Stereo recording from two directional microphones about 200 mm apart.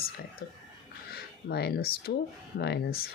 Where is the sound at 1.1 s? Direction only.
55° left (ahead or behind).